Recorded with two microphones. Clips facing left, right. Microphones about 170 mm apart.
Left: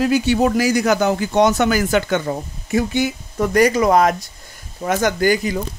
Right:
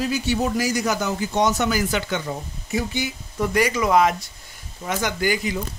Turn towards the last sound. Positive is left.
turn(degrees=45)  # may be behind; listen again after turning